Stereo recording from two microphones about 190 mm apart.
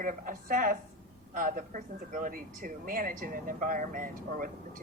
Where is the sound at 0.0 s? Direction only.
45° right (ahead or behind).